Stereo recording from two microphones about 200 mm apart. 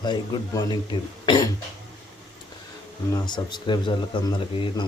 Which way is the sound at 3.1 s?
20° left (ahead or behind).